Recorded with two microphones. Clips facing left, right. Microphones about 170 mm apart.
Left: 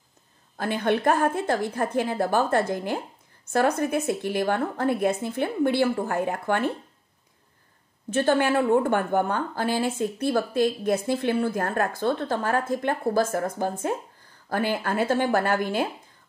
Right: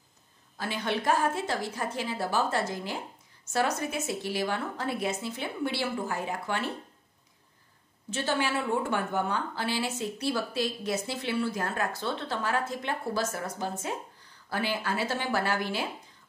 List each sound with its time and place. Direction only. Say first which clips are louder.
0.6 s a woman's voice: left 7 dB; 55° left (ahead or behind)
8.1 s a woman's voice: left 8 dB; 55° left (ahead or behind)